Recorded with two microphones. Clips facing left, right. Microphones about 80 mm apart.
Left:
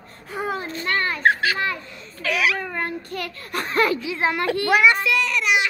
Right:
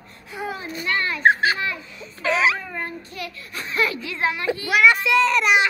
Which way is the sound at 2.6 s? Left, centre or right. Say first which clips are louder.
Left 4 dB; left.